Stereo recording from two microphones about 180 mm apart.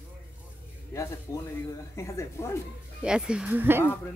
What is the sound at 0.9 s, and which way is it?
Speech, 15° left (ahead or behind).